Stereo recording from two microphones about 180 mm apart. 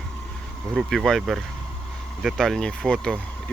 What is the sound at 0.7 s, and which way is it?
Speech, 5° right (ahead or behind).